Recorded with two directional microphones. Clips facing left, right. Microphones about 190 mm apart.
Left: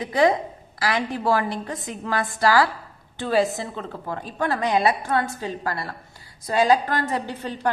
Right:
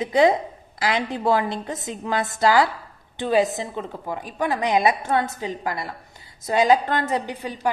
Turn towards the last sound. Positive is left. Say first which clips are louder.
# right 1 dB
turn(degrees=-15)  # may be behind; listen again after turning